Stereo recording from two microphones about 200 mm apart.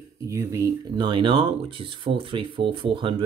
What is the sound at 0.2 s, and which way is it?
Speech, 15° right (ahead or behind).